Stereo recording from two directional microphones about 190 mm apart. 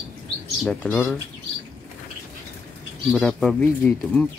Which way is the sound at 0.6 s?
5° left (ahead or behind).